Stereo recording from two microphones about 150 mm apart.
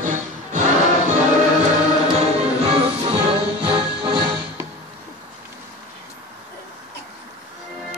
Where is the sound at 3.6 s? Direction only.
35° right (ahead or behind).